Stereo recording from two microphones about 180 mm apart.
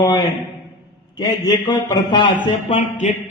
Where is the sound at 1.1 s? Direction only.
20° left (ahead or behind).